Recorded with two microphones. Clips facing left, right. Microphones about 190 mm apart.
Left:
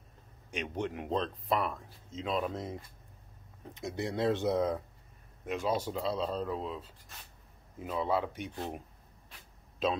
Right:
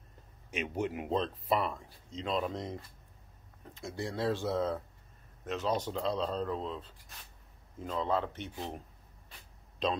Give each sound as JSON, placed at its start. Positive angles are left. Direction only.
{"t": 0.5, "sound": "speech", "side_deg": -5}
{"t": 3.7, "sound": "speech", "side_deg": 20}
{"t": 9.8, "sound": "speech", "side_deg": 5}